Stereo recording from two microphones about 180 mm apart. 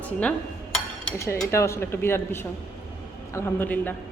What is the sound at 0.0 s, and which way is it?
Dishes, 5° left (ahead or behind).